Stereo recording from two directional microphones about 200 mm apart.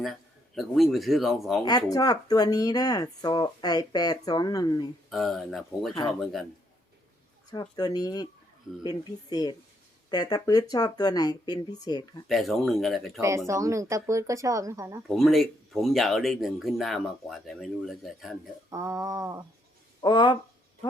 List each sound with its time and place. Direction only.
0.0 s speech: centre (ahead or behind)
1.6 s speech: 20° left (ahead or behind)
5.1 s speech: centre (ahead or behind)
7.5 s speech: 20° left (ahead or behind)
12.3 s speech: centre (ahead or behind)
13.5 s speech: 15° right (ahead or behind)
15.0 s speech: centre (ahead or behind)
18.7 s speech: 15° right (ahead or behind)
20.0 s speech: 20° left (ahead or behind)